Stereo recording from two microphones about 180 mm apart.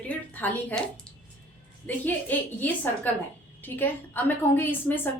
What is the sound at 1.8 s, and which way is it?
A woman's voice, 10° left (ahead or behind).